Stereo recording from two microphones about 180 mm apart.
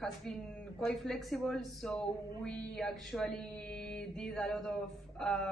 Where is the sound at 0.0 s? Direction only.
Centre (ahead or behind).